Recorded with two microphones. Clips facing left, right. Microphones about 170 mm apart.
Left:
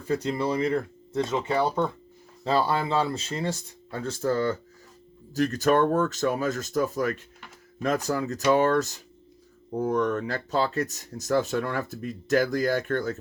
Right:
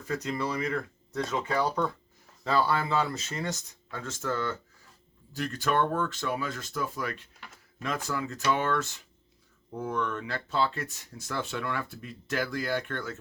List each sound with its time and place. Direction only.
0.1 s speech: 30° left (ahead or behind)